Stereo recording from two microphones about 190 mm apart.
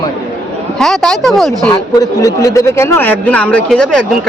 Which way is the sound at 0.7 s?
Centre (ahead or behind).